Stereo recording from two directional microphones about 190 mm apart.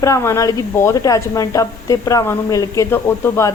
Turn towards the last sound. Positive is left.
turn(degrees=15)  # may be behind; listen again after turning